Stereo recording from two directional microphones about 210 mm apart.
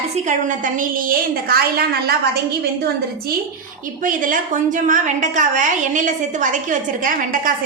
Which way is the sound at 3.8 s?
40° right (ahead or behind).